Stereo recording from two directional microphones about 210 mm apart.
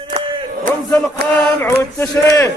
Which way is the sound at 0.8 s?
5° left (ahead or behind).